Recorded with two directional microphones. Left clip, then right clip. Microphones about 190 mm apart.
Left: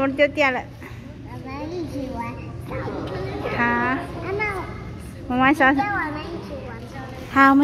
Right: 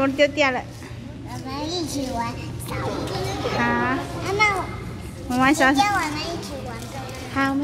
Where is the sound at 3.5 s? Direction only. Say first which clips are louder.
Left 2 dB; 5° left (ahead or behind).